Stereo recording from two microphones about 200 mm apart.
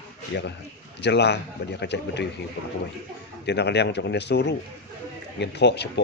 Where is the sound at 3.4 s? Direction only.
55° left (ahead or behind).